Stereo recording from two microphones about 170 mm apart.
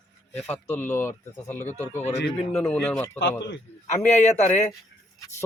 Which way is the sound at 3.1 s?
90° left.